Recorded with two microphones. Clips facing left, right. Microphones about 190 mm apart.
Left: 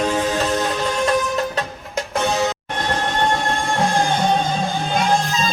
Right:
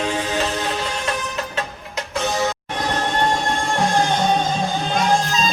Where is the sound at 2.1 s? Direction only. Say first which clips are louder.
Left 2 dB; 60° left (ahead or behind).